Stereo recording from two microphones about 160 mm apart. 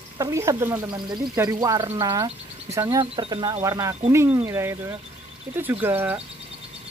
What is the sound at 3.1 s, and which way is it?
Speech, 30° right (ahead or behind).